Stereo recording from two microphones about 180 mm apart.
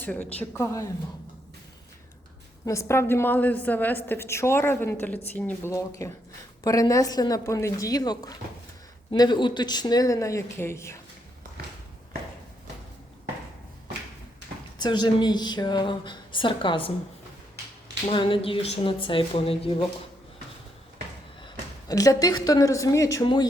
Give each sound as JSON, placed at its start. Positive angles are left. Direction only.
{"t": 0.0, "sound": "a woman's voice", "side_deg": 10}
{"t": 2.6, "sound": "a woman's voice", "side_deg": 15}
{"t": 14.8, "sound": "a woman's voice", "side_deg": 25}
{"t": 18.1, "sound": "a woman's voice", "side_deg": 30}
{"t": 21.4, "sound": "speech", "side_deg": 20}